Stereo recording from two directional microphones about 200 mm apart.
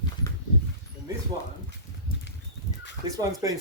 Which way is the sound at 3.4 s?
15° right (ahead or behind).